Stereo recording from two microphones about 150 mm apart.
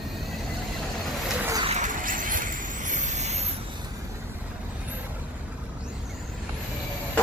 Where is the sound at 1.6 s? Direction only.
55° right (ahead or behind).